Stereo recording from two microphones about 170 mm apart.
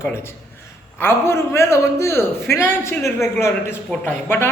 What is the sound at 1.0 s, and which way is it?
A woman's voice, 15° left (ahead or behind).